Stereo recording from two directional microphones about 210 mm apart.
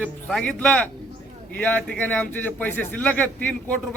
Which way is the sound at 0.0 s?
5° left (ahead or behind).